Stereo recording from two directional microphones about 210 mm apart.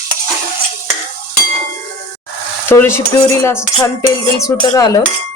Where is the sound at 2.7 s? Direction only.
15° left (ahead or behind).